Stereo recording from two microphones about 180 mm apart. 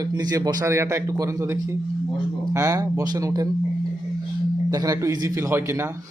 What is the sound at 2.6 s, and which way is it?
Speech, 15° right (ahead or behind).